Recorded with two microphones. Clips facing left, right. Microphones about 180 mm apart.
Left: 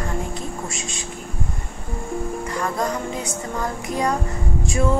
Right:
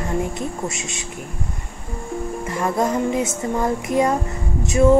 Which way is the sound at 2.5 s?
25° right (ahead or behind).